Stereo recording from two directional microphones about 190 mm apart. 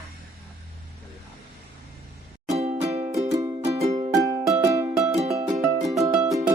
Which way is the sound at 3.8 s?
35° right (ahead or behind).